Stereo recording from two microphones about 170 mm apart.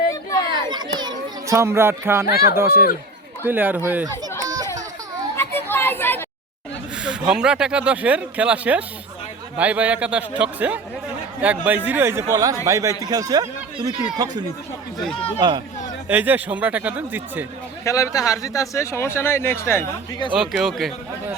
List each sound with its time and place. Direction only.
0.5 s a sound: 25° right (ahead or behind)
0.9 s children playing: 25° right (ahead or behind)
2.6 s speech: 15° right (ahead or behind)
4.4 s children playing: 20° right (ahead or behind)
5.4 s children playing: 10° left (ahead or behind)
6.9 s speech: 5° right (ahead or behind); by 14.4 s 25° right (ahead or behind)
15.1 s speech: 35° left (ahead or behind)
15.4 s speech: 25° right (ahead or behind)
16.0 s speech: 10° right (ahead or behind)
17.8 s speech: 20° left (ahead or behind)
20.4 s speech: centre (ahead or behind)